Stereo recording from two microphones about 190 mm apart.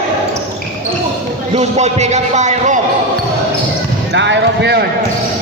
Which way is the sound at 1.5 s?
35° right (ahead or behind).